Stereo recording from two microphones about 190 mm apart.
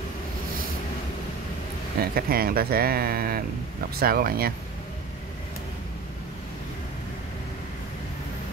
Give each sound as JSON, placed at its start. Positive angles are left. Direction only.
{"t": 2.0, "sound": "speech", "side_deg": -50}